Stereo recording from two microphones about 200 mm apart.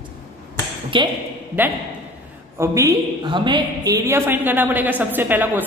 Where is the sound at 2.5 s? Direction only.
15° right (ahead or behind).